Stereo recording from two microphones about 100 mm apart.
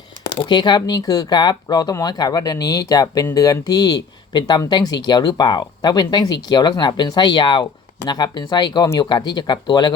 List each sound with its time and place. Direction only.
0.3 s speech: 55° left (ahead or behind)